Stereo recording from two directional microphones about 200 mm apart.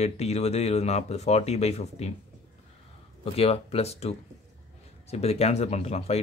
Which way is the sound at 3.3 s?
30° left (ahead or behind).